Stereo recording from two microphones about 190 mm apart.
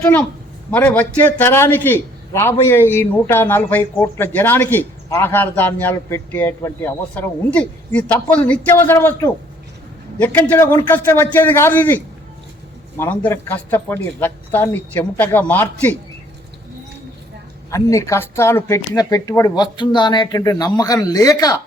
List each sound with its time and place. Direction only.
0.0 s a man's voice: 10° left (ahead or behind)
17.7 s speech: 15° left (ahead or behind)